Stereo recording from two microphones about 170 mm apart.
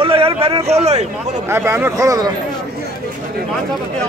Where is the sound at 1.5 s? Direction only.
15° right (ahead or behind).